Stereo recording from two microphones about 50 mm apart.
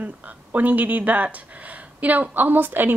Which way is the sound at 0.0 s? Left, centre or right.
Right.